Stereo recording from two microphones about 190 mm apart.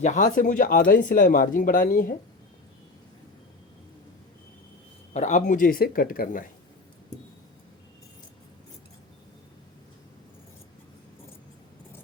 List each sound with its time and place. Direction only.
0.0 s speech: 40° left (ahead or behind)
5.1 s speech: 40° left (ahead or behind)